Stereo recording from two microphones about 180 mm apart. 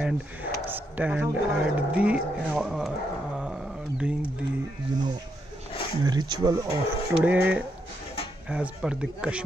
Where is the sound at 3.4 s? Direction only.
5° right (ahead or behind).